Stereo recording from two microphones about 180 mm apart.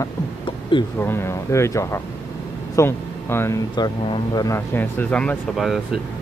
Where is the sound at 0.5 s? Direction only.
25° left (ahead or behind).